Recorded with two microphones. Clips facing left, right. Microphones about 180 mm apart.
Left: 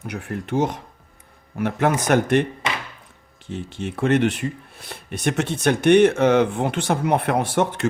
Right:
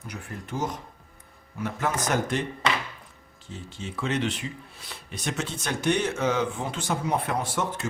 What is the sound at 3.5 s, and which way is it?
Speech, 65° left (ahead or behind).